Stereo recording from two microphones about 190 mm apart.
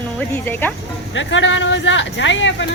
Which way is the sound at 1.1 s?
80° left.